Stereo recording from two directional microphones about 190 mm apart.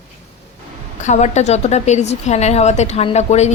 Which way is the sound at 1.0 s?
35° left (ahead or behind).